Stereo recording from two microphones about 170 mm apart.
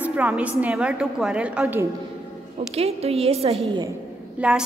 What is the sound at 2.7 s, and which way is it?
A woman's voice, 35° right (ahead or behind).